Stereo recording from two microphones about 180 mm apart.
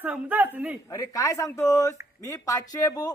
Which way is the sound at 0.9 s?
20° left (ahead or behind).